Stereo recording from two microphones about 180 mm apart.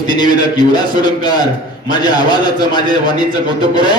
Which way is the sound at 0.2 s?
25° left (ahead or behind).